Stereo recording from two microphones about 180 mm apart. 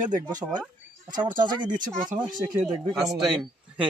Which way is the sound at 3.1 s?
Centre (ahead or behind).